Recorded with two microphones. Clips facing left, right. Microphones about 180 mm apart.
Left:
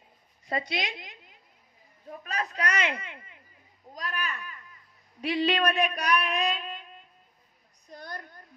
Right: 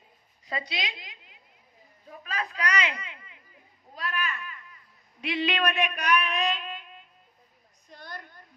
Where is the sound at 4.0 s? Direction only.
35° left (ahead or behind).